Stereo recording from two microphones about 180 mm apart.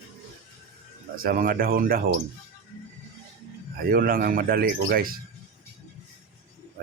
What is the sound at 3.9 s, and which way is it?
A man's voice, 55° right (ahead or behind).